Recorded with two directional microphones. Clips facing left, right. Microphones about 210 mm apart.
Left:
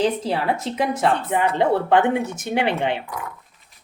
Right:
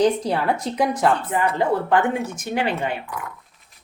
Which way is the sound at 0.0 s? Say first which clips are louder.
Right 2 dB; 5° left (ahead or behind).